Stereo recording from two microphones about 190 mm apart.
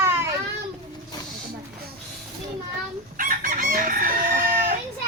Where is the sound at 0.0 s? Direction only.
15° right (ahead or behind).